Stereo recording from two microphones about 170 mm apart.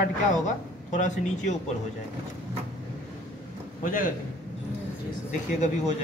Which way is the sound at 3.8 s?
55° left (ahead or behind).